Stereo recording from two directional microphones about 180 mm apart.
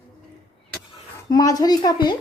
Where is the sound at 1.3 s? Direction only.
20° left (ahead or behind).